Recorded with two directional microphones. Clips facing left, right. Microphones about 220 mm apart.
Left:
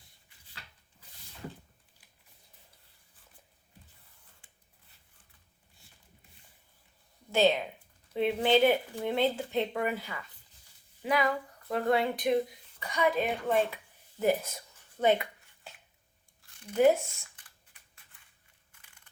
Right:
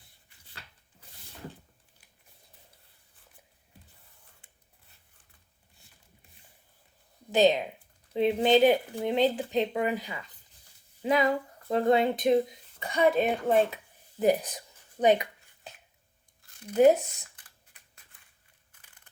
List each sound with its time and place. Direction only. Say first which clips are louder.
7.3 s speech: right 3 dB; 20° right (ahead or behind)
14.2 s a sound: right 3 dB; 15° right (ahead or behind)
16.7 s speech: right 3 dB; 20° right (ahead or behind)